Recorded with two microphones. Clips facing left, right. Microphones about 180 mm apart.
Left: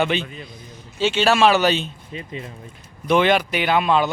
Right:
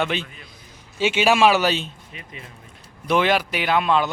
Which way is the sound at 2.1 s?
30° left (ahead or behind).